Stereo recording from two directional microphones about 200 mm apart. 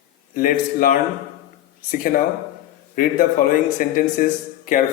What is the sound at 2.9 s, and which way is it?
A man's voice, 45° left (ahead or behind).